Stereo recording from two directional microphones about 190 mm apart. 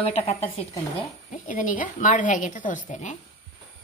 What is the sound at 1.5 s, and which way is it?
A woman's voice, 45° left (ahead or behind).